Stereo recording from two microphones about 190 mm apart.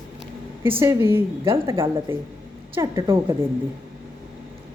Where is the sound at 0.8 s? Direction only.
15° right (ahead or behind).